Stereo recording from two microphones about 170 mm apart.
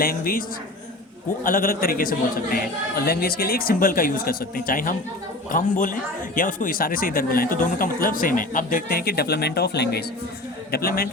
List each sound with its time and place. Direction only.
0.0 s speech: 60° left (ahead or behind)
1.5 s speech: 55° left (ahead or behind); by 10.0 s 75° left (ahead or behind)
10.7 s speech: 60° left (ahead or behind)